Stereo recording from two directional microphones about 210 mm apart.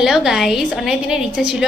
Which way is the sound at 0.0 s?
5° right (ahead or behind).